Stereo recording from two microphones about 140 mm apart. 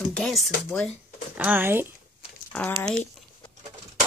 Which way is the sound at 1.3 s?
10° right (ahead or behind).